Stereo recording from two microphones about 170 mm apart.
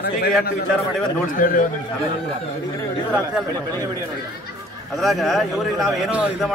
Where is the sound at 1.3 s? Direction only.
55° left (ahead or behind).